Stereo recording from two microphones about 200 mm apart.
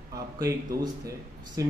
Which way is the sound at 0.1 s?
15° right (ahead or behind).